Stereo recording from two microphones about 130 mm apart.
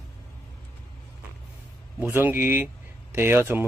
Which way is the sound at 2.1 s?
15° right (ahead or behind).